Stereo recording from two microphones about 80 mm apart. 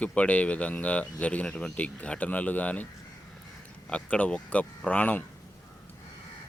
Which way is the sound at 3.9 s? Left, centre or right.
Centre.